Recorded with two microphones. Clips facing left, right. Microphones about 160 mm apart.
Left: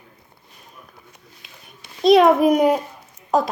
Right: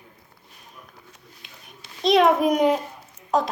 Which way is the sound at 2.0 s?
5° left (ahead or behind).